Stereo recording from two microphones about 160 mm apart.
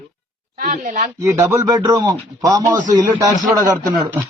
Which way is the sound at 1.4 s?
20° right (ahead or behind).